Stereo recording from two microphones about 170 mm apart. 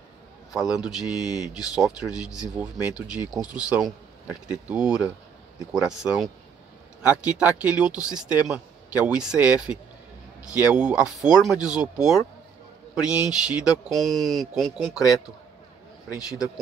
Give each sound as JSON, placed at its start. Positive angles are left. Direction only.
{"t": 0.5, "sound": "speech", "side_deg": -5}
{"t": 0.9, "sound": "speech", "side_deg": 20}
{"t": 1.6, "sound": "speech", "side_deg": -5}
{"t": 13.0, "sound": "speech", "side_deg": 20}
{"t": 13.3, "sound": "speech", "side_deg": -5}
{"t": 16.2, "sound": "speech", "side_deg": 20}